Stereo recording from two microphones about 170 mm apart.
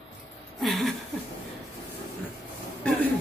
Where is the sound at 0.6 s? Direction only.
Centre (ahead or behind).